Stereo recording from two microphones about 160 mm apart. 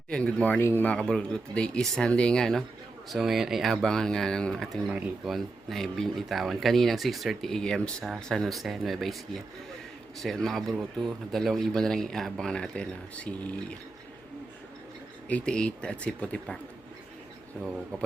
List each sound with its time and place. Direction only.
0.1 s speech: 5° left (ahead or behind)
4.9 s speech: 10° right (ahead or behind); by 13.7 s 10° left (ahead or behind)
15.3 s speech: 5° left (ahead or behind)